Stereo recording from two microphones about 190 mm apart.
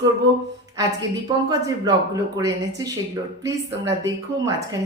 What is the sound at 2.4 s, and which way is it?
Speech, 20° right (ahead or behind).